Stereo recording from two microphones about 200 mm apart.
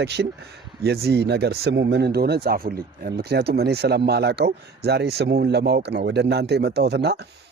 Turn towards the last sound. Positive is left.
turn(degrees=-55)  # may be behind; listen again after turning